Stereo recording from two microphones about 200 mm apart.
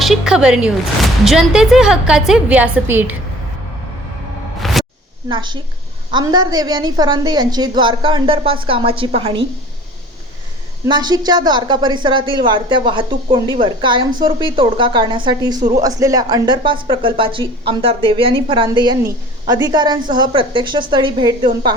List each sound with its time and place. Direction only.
0.0 s a woman's voice: centre (ahead or behind)
4.6 s a sound: centre (ahead or behind)
5.3 s speech: 20° right (ahead or behind)
10.8 s speech: 20° right (ahead or behind)